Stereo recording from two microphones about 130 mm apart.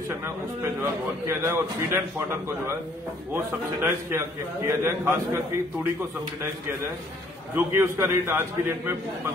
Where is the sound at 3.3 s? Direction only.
20° right (ahead or behind).